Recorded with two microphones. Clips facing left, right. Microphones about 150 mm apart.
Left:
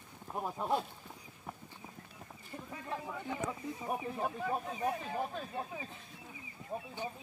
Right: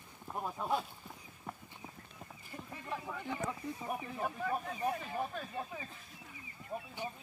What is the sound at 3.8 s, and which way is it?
Speech, 25° left (ahead or behind).